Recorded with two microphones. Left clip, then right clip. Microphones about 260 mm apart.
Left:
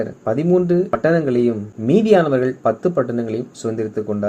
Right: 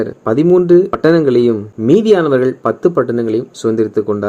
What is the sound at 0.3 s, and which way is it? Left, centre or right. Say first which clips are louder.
Speech: right 7 dB; right.